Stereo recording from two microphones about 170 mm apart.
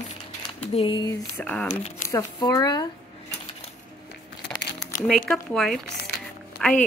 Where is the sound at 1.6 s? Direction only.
45° left (ahead or behind).